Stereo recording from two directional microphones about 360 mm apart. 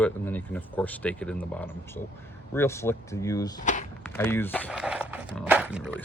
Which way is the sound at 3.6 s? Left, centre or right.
Left.